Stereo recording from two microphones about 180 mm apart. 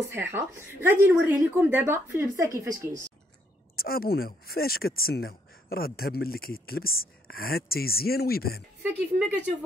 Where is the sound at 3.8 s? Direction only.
55° left (ahead or behind).